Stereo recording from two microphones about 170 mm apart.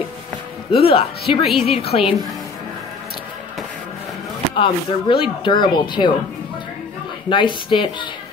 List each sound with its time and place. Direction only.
0.7 s speech: 30° left (ahead or behind)
4.6 s speech: 30° left (ahead or behind)
7.2 s speech: 30° left (ahead or behind)